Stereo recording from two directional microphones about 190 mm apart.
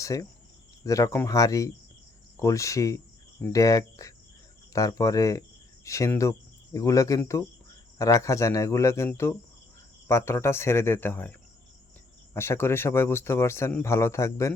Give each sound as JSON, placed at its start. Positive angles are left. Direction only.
{"t": 0.0, "sound": "cricket", "side_deg": 15}
{"t": 0.9, "sound": "speech", "side_deg": 15}